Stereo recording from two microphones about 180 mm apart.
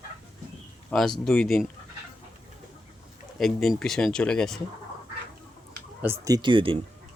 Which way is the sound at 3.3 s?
Centre (ahead or behind).